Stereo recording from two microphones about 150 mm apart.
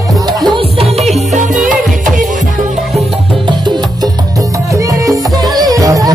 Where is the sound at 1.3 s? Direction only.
55° right (ahead or behind).